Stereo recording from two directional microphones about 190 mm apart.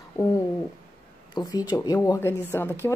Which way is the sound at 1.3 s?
20° left (ahead or behind).